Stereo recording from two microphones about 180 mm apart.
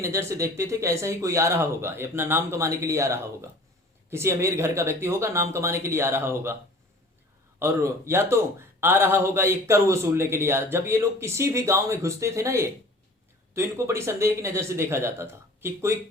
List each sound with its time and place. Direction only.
0.0 s a man's voice: 15° right (ahead or behind)
7.6 s a man's voice: 15° right (ahead or behind)